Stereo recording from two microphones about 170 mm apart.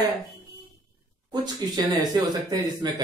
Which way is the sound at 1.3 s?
25° right (ahead or behind).